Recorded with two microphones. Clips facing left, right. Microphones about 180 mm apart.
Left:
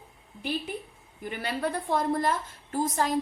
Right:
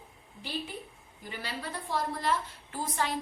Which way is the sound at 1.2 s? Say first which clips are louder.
Left 8 dB; 55° left (ahead or behind).